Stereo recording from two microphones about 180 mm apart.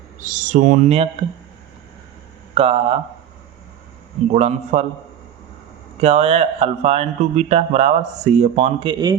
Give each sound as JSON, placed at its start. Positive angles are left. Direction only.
{"t": 0.2, "sound": "speech", "side_deg": -45}
{"t": 2.6, "sound": "a man's voice", "side_deg": -35}
{"t": 4.3, "sound": "a man's voice", "side_deg": -40}
{"t": 6.0, "sound": "a man's voice", "side_deg": -35}
{"t": 8.9, "sound": "speech", "side_deg": -20}